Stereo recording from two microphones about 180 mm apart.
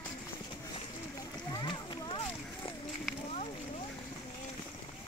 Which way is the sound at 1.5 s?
25° left (ahead or behind).